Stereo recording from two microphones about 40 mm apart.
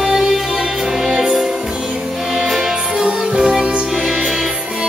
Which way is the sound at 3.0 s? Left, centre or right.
Right.